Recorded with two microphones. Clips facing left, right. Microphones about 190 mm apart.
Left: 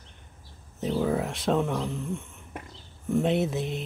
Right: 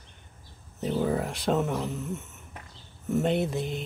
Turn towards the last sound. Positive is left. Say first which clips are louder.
# left 1 dB
turn(degrees=0)  # may be behind; listen again after turning